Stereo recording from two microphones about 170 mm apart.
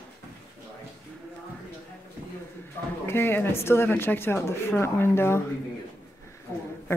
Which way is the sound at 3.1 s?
15° left (ahead or behind).